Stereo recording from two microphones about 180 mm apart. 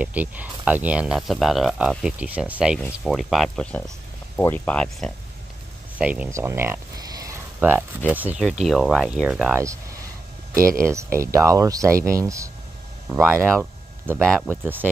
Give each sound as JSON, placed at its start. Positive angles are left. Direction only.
{"t": 0.0, "sound": "speech", "side_deg": -10}
{"t": 5.9, "sound": "a sound", "side_deg": -5}
{"t": 8.1, "sound": "speech", "side_deg": -10}
{"t": 10.8, "sound": "speech", "side_deg": -15}
{"t": 14.2, "sound": "speech", "side_deg": 0}
{"t": 14.5, "sound": "speech", "side_deg": -10}